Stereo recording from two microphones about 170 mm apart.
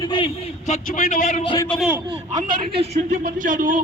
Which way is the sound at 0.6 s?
50° left (ahead or behind).